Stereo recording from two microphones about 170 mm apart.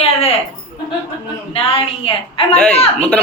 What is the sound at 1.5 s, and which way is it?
A woman's voice, 35° left (ahead or behind).